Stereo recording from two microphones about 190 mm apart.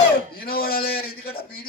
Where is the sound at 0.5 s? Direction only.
50° left (ahead or behind).